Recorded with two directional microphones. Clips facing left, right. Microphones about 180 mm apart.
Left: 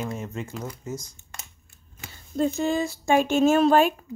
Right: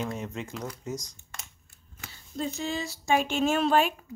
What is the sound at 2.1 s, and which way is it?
Speech, 50° left (ahead or behind).